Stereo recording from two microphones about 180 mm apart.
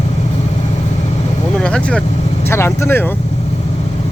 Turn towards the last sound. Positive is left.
turn(degrees=15)  # may be behind; listen again after turning